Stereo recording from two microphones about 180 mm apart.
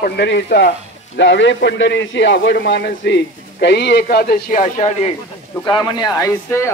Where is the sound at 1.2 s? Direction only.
85° left; by 5.1 s 40° left (ahead or behind).